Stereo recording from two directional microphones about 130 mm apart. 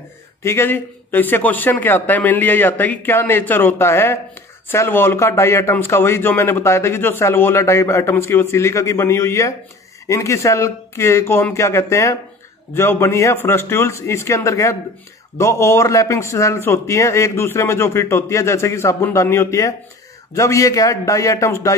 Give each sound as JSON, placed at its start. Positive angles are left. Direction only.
{"t": 0.4, "sound": "a man's voice", "side_deg": 20}